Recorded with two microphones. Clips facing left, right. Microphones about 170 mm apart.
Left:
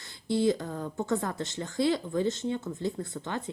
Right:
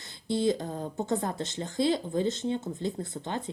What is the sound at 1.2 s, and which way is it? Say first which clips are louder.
Speech: right 1 dB; 20° right (ahead or behind).